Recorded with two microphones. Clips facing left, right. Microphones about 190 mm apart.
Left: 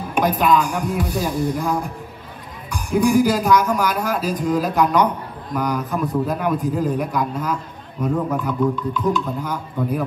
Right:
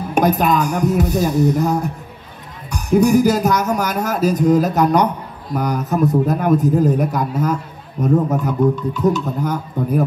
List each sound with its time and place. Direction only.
0.1 s speech: 45° right (ahead or behind)